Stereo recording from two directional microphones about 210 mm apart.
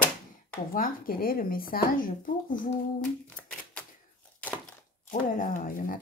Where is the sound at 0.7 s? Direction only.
40° left (ahead or behind).